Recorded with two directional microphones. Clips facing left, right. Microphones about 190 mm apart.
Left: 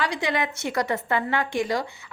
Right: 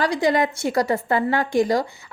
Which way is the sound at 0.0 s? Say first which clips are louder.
Right 6 dB; 40° right (ahead or behind).